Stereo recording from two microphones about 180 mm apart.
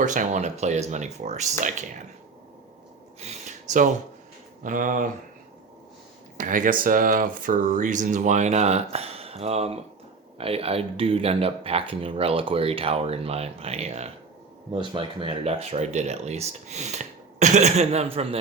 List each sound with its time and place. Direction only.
0.0 s speech: 45° right (ahead or behind)
3.2 s a sound: 40° right (ahead or behind)
4.6 s speech: 45° right (ahead or behind)
6.3 s speech: 50° right (ahead or behind)